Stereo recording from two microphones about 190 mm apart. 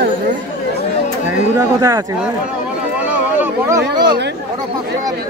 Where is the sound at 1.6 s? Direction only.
15° right (ahead or behind).